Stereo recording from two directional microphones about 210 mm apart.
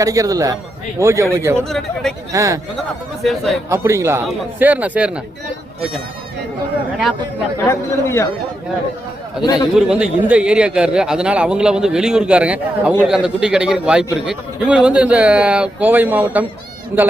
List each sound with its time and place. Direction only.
0.0 s speech: 15° right (ahead or behind)
1.6 s a man's voice: centre (ahead or behind)
2.3 s speech: 15° right (ahead or behind)
3.7 s speech: 15° right (ahead or behind)
7.6 s speech: 15° left (ahead or behind)
9.4 s a man's voice: 20° left (ahead or behind)
9.7 s a man's voice: 5° right (ahead or behind)